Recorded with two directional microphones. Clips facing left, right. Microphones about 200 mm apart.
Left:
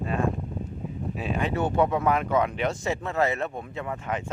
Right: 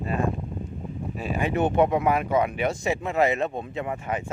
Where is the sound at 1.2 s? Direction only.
5° right (ahead or behind).